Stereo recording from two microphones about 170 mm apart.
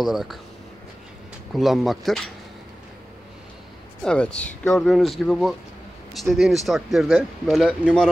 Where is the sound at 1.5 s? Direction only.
Centre (ahead or behind).